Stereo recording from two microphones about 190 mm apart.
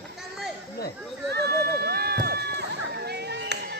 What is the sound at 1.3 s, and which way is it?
Music, 55° right (ahead or behind).